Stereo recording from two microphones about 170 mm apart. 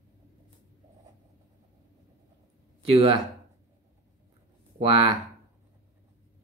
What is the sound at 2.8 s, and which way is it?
Speech, 35° right (ahead or behind).